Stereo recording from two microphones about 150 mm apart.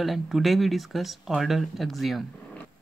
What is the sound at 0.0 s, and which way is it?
Speech, centre (ahead or behind).